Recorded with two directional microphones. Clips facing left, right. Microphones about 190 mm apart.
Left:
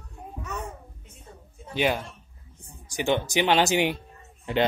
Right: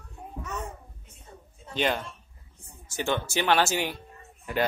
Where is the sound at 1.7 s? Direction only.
10° left (ahead or behind).